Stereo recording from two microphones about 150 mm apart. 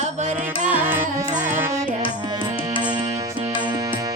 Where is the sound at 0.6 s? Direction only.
10° right (ahead or behind).